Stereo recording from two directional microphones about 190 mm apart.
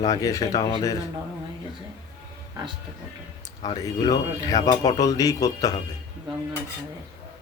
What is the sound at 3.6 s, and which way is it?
Speech, 20° left (ahead or behind).